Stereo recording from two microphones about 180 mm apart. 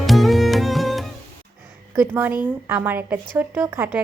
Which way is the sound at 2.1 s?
10° right (ahead or behind).